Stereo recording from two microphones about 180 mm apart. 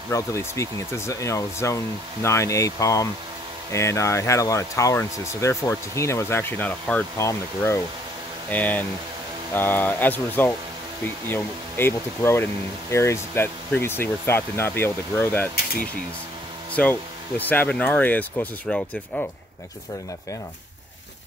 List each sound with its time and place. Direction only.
0.1 s speech: 15° left (ahead or behind)
16.7 s speech: 10° left (ahead or behind)